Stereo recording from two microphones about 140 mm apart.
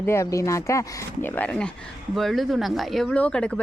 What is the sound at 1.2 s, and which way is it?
A woman's voice, 10° left (ahead or behind).